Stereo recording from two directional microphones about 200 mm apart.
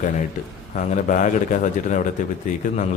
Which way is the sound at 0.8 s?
40° left (ahead or behind).